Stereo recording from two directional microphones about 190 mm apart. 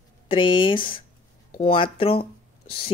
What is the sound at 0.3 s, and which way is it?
Speech, 25° left (ahead or behind).